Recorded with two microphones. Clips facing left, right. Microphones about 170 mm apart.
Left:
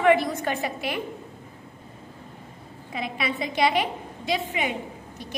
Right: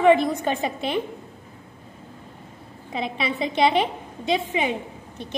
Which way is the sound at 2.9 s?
25° right (ahead or behind).